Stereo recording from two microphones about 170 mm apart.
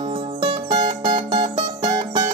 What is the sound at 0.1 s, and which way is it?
Music, 30° right (ahead or behind).